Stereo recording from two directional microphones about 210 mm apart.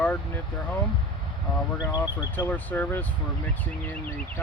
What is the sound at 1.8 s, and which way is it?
Speech, 20° left (ahead or behind).